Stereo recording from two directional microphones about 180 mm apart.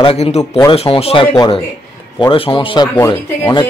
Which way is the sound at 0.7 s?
35° left (ahead or behind).